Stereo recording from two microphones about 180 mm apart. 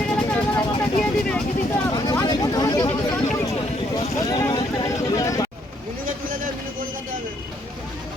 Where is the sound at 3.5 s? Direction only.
35° left (ahead or behind).